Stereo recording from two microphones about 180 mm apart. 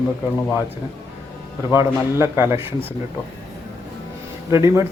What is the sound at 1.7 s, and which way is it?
Speech, 15° right (ahead or behind).